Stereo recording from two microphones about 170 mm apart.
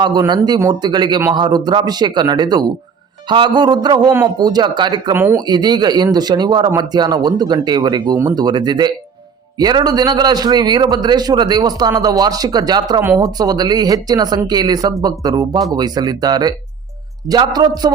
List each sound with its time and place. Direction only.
0.0 s speech: 25° right (ahead or behind)
5.1 s speech: 10° right (ahead or behind)
5.4 s speech: 25° right (ahead or behind)